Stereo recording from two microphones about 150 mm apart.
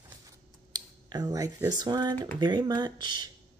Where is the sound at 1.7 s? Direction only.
25° right (ahead or behind).